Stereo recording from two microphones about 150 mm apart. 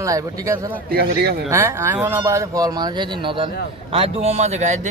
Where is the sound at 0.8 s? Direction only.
90° right.